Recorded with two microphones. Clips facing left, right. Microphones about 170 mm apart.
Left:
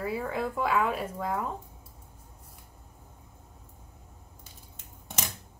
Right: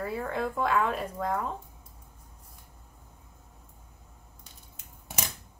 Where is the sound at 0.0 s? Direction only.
5° left (ahead or behind).